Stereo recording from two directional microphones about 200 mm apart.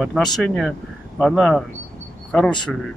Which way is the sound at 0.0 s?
Centre (ahead or behind).